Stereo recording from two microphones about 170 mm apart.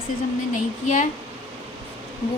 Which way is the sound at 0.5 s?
45° left (ahead or behind).